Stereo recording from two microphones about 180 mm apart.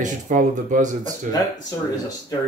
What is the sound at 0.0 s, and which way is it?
Speech, 45° right (ahead or behind).